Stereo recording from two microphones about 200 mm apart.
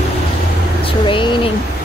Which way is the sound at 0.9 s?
25° left (ahead or behind).